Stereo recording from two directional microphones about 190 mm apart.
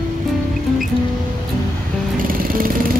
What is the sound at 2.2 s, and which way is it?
Music, 50° right (ahead or behind).